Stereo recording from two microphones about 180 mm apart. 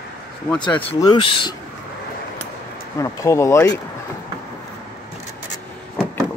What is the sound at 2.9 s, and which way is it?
Speech, 20° left (ahead or behind).